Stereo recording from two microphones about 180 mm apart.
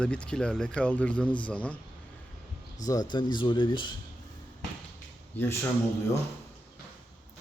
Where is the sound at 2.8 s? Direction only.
20° left (ahead or behind).